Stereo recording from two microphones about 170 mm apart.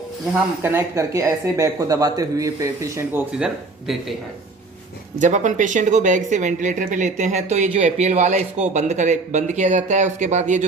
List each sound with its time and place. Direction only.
0.6 s speech: 15° right (ahead or behind)
3.3 s speech: 5° right (ahead or behind)
5.2 s speech: 45° right (ahead or behind)